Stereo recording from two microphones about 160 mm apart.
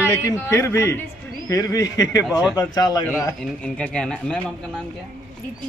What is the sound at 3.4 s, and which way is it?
Speech, 5° left (ahead or behind).